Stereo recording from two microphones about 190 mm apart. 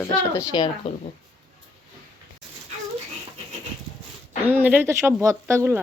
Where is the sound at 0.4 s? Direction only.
25° left (ahead or behind).